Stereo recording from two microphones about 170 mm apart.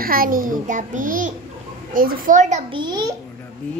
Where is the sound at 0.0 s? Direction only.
60° right (ahead or behind).